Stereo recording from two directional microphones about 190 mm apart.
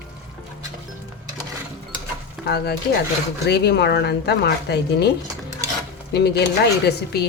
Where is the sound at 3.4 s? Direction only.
60° left (ahead or behind).